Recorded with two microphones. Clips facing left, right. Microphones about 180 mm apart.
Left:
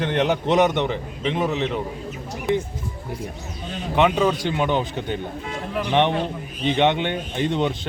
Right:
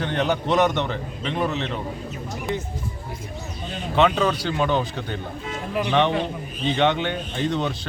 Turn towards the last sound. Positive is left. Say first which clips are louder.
# left 2 dB
turn(degrees=20)  # may be behind; listen again after turning